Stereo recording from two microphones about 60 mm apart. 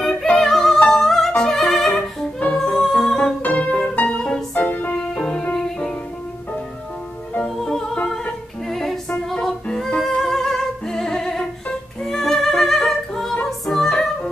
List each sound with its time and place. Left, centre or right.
0.0 s music: centre
3.4 s music: left
5.1 s music: centre
7.4 s music: centre